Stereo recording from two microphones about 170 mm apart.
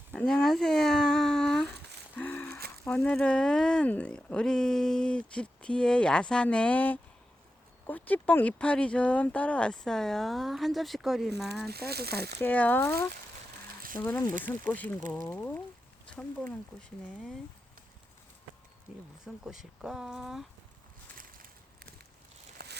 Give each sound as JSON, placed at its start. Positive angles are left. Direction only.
{"t": 0.1, "sound": "a sound", "side_deg": 5}
{"t": 2.1, "sound": "music", "side_deg": 10}
{"t": 2.8, "sound": "speech", "side_deg": 10}
{"t": 11.7, "sound": "speech", "side_deg": -70}
{"t": 12.4, "sound": "speech", "side_deg": 10}
{"t": 18.9, "sound": "speech", "side_deg": -5}
{"t": 22.6, "sound": "a sound", "side_deg": -70}